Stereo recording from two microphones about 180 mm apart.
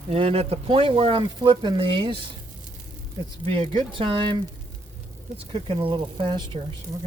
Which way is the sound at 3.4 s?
30° right (ahead or behind).